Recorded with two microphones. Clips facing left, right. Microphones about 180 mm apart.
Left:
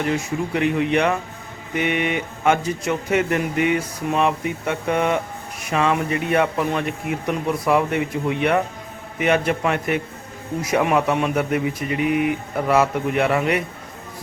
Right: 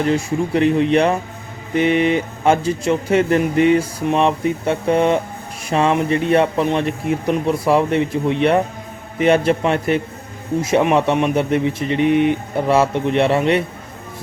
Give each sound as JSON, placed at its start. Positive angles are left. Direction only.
{"t": 0.0, "sound": "speech", "side_deg": -35}